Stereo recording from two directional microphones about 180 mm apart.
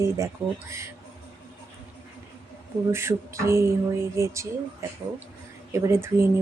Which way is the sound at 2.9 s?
15° right (ahead or behind).